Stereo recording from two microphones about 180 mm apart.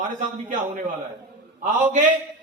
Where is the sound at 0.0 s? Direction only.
45° right (ahead or behind).